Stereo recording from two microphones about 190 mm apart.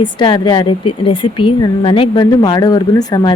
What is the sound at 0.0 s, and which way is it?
Speech, 25° left (ahead or behind).